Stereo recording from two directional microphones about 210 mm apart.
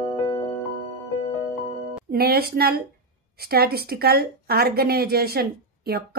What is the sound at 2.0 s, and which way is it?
A woman's voice, 45° right (ahead or behind).